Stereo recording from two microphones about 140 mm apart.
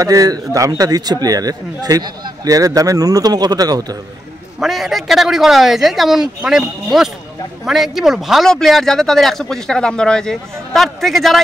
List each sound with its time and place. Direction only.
0.0 s a man's voice: 25° right (ahead or behind)
4.6 s speech: centre (ahead or behind)